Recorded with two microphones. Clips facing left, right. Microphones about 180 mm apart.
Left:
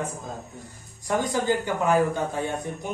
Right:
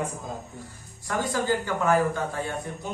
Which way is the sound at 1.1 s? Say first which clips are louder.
Left 2 dB; 20° left (ahead or behind).